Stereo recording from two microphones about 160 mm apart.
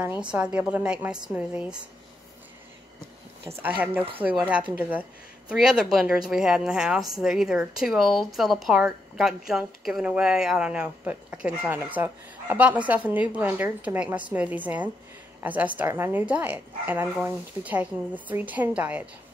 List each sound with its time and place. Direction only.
0.3 s speech: 5° right (ahead or behind)
3.6 s speech: 10° right (ahead or behind)